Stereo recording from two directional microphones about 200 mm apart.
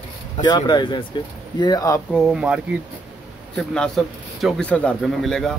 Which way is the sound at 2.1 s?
Centre (ahead or behind).